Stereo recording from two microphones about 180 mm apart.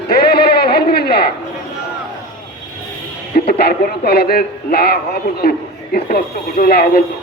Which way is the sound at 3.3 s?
60° left (ahead or behind).